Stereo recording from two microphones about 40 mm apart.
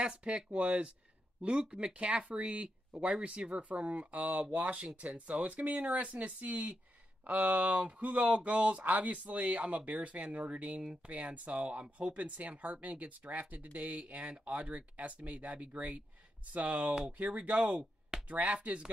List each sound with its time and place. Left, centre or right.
0.0 s speech: right